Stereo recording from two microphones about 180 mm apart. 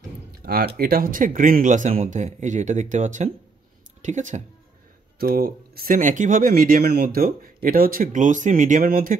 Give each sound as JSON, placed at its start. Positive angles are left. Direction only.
{"t": 0.4, "sound": "a sound", "side_deg": -55}
{"t": 0.7, "sound": "speech", "side_deg": -55}
{"t": 5.2, "sound": "speech", "side_deg": -55}